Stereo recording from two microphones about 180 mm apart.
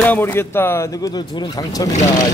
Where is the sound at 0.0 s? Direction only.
10° left (ahead or behind).